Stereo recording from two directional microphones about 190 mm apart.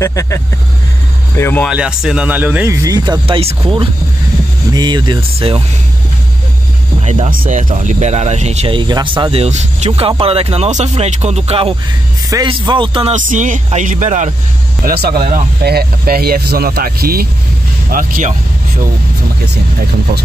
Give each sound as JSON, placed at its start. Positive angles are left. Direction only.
{"t": 0.0, "sound": "speech", "side_deg": 15}
{"t": 1.7, "sound": "speech", "side_deg": -5}
{"t": 7.0, "sound": "music", "side_deg": -30}
{"t": 7.2, "sound": "speech", "side_deg": -45}
{"t": 13.1, "sound": "speech", "side_deg": -40}
{"t": 14.9, "sound": "speech", "side_deg": -55}